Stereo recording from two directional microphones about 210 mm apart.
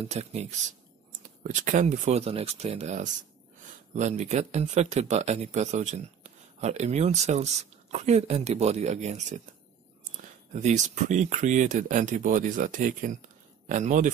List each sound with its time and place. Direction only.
0.0 s speech: 30° right (ahead or behind)